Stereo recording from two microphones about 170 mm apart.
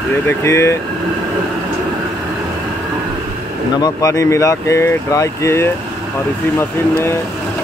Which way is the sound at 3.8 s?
20° left (ahead or behind).